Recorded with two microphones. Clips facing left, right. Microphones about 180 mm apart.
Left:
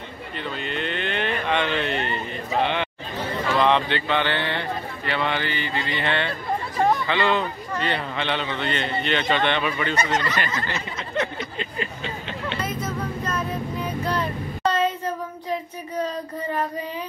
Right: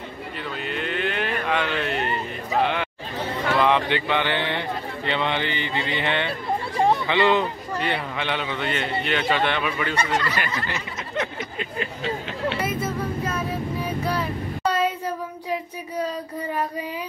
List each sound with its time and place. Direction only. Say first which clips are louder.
0.4 s a sound: left 1 dB; 5° right (ahead or behind)
3.5 s a man's voice: even; 10° right (ahead or behind)
13.8 s child singing: left 1 dB; 10° right (ahead or behind)